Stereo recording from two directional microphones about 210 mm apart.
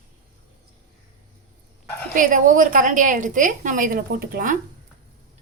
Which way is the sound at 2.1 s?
40° right (ahead or behind).